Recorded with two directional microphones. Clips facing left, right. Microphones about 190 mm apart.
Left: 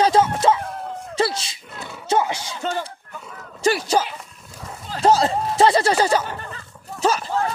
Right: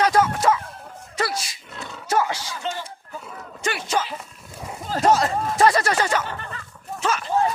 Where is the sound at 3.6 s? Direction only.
35° left (ahead or behind).